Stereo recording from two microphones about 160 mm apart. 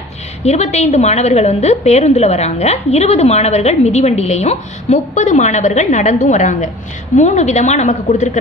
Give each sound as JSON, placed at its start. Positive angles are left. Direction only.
{"t": 0.4, "sound": "a woman's voice", "side_deg": 40}